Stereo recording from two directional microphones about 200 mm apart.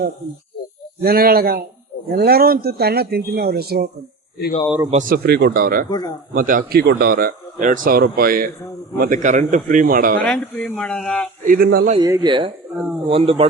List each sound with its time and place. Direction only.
1.0 s speech: 50° right (ahead or behind)
4.9 s speech: 40° right (ahead or behind)
5.9 s a man's voice: 20° left (ahead or behind)
6.3 s speech: 45° right (ahead or behind)
10.2 s speech: 5° left (ahead or behind)
11.4 s speech: 45° right (ahead or behind)
11.9 s speech: 20° right (ahead or behind)
12.7 s speech: 5° right (ahead or behind)
13.1 s speech: 30° right (ahead or behind)